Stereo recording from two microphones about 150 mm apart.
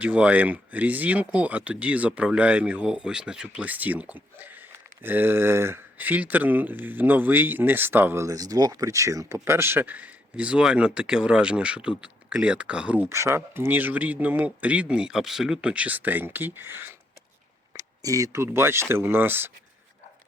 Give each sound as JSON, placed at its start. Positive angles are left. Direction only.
{"t": 0.0, "sound": "speech", "side_deg": -10}